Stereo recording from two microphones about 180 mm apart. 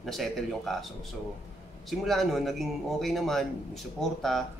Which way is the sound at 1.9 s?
Centre (ahead or behind).